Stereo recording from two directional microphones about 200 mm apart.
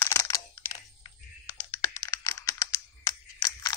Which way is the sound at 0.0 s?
15° left (ahead or behind).